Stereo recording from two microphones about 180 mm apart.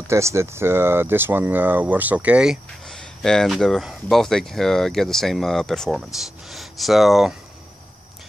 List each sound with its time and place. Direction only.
0.1 s speech: 15° right (ahead or behind)